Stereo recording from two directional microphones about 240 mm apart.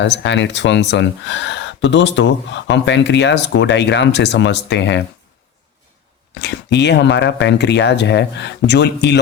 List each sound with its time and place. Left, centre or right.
0.0 s speech: left
6.4 s speech: left